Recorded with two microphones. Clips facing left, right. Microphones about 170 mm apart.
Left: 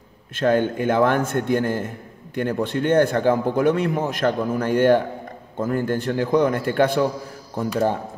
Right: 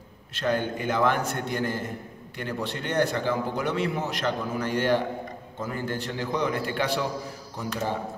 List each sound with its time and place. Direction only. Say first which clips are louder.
0.3 s a man's voice: left 7 dB; 50° left (ahead or behind)